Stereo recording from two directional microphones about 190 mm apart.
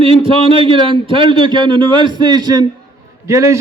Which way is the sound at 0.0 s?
30° right (ahead or behind).